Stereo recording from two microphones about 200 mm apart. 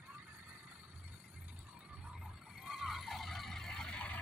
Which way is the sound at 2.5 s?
Centre (ahead or behind).